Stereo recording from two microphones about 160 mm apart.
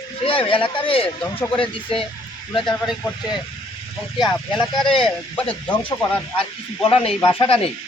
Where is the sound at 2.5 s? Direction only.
Centre (ahead or behind).